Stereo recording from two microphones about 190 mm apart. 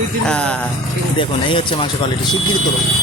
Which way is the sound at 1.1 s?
25° left (ahead or behind).